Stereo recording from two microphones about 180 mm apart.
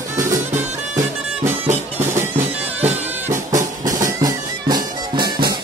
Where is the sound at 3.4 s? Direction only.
20° right (ahead or behind).